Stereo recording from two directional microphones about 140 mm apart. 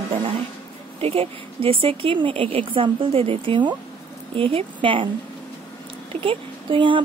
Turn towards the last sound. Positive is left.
turn(degrees=-35)  # may be behind; listen again after turning